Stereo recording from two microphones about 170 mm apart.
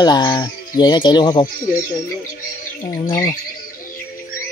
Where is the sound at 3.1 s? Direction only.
20° left (ahead or behind).